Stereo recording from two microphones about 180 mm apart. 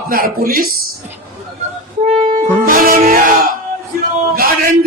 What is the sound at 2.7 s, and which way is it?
Music, 50° right (ahead or behind).